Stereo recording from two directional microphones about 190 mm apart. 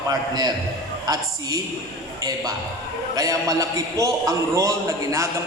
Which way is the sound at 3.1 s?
20° right (ahead or behind).